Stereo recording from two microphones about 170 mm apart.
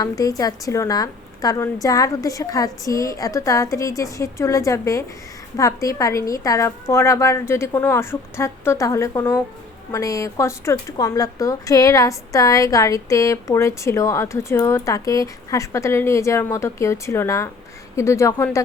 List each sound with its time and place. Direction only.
0.0 s a woman's voice: 20° left (ahead or behind)